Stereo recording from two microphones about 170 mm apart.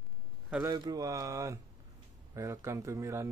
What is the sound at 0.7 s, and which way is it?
Speech, 20° right (ahead or behind).